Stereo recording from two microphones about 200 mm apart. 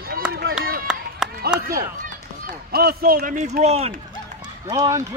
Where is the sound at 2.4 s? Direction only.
50° right (ahead or behind); by 4.5 s 30° right (ahead or behind).